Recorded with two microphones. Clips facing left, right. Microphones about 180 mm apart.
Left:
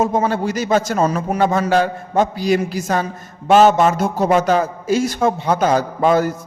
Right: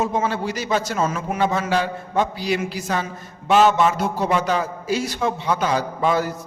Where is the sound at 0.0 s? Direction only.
45° left (ahead or behind).